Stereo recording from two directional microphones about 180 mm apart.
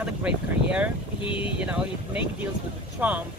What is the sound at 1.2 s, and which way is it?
Speech, 30° left (ahead or behind).